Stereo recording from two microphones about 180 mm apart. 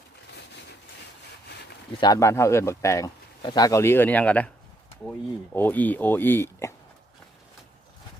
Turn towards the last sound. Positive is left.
turn(degrees=15)  # may be behind; listen again after turning